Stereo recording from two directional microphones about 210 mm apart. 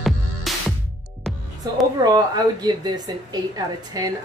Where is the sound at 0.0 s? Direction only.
Centre (ahead or behind).